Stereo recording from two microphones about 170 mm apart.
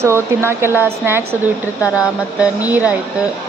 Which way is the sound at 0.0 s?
15° right (ahead or behind).